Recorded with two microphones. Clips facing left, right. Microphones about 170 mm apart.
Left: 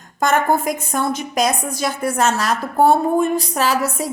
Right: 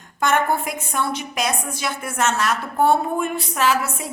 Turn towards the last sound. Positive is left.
turn(degrees=35)  # may be behind; listen again after turning